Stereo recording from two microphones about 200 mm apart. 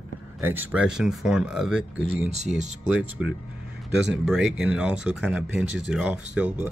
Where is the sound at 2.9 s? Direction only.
5° right (ahead or behind).